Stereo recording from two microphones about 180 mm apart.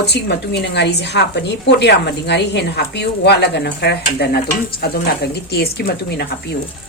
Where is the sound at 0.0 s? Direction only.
65° left (ahead or behind).